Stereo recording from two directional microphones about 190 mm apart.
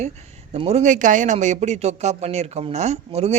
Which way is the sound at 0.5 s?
30° right (ahead or behind).